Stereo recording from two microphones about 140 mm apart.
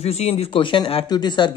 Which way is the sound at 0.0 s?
50° left (ahead or behind).